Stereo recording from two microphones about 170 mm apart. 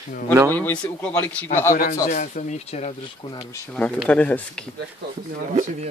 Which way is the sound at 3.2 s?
25° left (ahead or behind).